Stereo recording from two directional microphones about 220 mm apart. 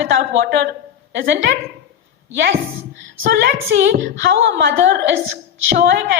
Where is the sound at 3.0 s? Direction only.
50° right (ahead or behind).